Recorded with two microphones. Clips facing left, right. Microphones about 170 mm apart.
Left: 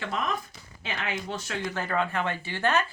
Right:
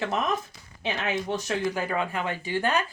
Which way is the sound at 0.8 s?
20° right (ahead or behind).